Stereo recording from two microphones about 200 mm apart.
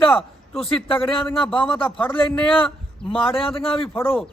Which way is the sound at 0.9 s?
25° left (ahead or behind).